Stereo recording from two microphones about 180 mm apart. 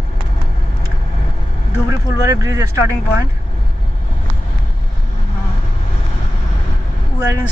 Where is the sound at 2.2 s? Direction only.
15° right (ahead or behind).